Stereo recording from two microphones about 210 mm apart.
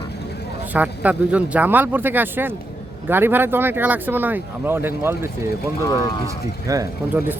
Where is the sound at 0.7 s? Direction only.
5° right (ahead or behind).